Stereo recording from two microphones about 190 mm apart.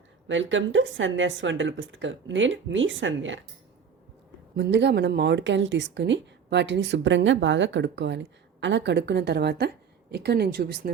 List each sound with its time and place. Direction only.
0.3 s speech: 80° right
4.5 s speech: 65° right (ahead or behind)